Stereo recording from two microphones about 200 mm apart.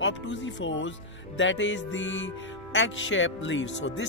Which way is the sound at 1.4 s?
65° left (ahead or behind).